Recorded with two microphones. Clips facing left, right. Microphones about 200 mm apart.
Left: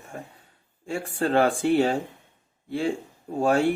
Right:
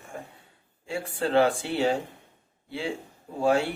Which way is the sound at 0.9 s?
50° left (ahead or behind).